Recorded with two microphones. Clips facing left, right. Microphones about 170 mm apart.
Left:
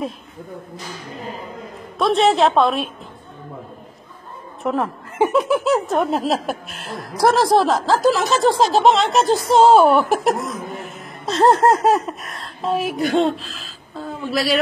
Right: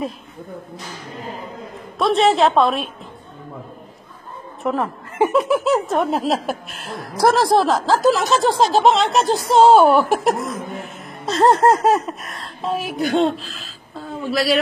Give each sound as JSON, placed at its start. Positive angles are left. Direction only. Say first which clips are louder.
{"t": 2.0, "sound": "speech", "louder": "even", "side_deg": 0}
{"t": 4.6, "sound": "speech", "louder": "even", "side_deg": 0}
{"t": 8.3, "sound": "speech", "louder": "left 1 dB", "side_deg": 45}
{"t": 8.7, "sound": "speech", "louder": "even", "side_deg": 0}
{"t": 14.3, "sound": "speech", "louder": "right 1 dB", "side_deg": 0}